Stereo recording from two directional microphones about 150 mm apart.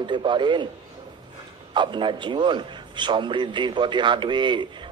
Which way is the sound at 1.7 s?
30° right (ahead or behind).